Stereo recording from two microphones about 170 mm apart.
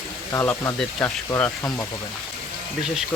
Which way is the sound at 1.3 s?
20° left (ahead or behind).